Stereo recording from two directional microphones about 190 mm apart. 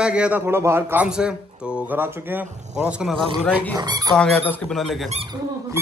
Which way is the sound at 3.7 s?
20° right (ahead or behind).